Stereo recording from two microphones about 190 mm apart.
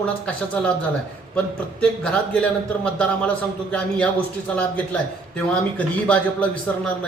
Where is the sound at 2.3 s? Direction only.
5° left (ahead or behind).